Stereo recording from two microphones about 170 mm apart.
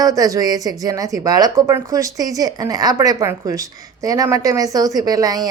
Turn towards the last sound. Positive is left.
turn(degrees=-20)  # may be behind; listen again after turning